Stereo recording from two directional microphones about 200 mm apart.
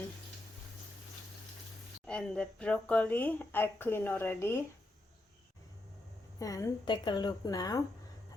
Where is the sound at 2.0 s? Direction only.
5° left (ahead or behind).